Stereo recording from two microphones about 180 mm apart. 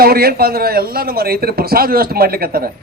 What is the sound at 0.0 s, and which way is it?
A man's voice, 60° right (ahead or behind).